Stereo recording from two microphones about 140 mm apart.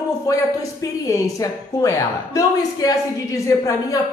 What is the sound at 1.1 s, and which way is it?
A woman's voice, 25° left (ahead or behind).